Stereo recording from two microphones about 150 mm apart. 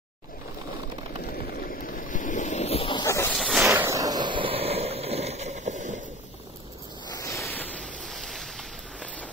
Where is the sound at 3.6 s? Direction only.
20° right (ahead or behind); by 6.0 s 55° right (ahead or behind).